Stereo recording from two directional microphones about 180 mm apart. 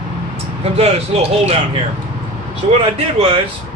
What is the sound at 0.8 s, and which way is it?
Speech, 35° right (ahead or behind).